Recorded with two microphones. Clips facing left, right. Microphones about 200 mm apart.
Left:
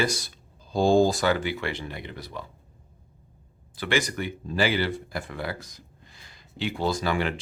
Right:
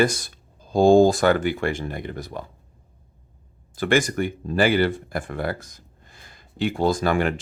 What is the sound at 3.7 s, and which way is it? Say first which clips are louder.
Speech: right 6 dB; 50° right (ahead or behind).